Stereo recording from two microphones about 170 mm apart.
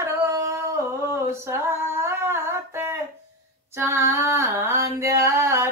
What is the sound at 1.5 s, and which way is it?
Humming, 15° right (ahead or behind).